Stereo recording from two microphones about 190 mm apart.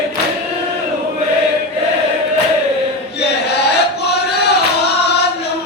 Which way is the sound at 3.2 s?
60° left (ahead or behind).